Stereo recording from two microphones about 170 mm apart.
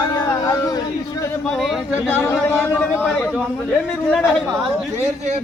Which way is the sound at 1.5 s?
Centre (ahead or behind).